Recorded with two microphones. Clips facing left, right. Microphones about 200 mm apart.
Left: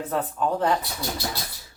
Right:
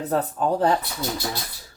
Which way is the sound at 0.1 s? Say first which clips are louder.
Right 3 dB; 40° right (ahead or behind).